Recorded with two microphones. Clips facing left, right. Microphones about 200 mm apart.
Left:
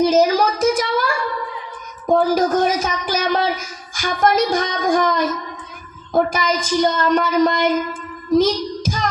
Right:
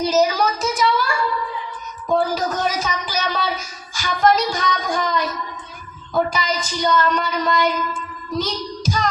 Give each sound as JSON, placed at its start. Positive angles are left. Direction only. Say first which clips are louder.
{"t": 0.1, "sound": "a sound", "louder": "left 3 dB", "side_deg": 50}
{"t": 2.0, "sound": "speech", "louder": "left 4 dB", "side_deg": 50}
{"t": 8.4, "sound": "child singing", "louder": "left 8 dB", "side_deg": 50}